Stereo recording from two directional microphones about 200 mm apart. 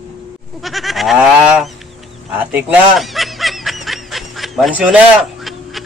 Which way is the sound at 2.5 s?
5° right (ahead or behind).